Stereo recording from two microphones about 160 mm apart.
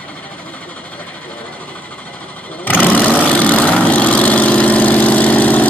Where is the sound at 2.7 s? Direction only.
10° left (ahead or behind).